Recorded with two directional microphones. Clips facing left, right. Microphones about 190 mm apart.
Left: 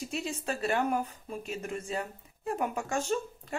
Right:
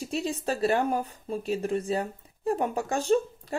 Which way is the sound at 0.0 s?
35° right (ahead or behind).